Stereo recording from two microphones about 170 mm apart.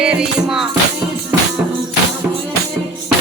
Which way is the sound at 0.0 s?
5° right (ahead or behind).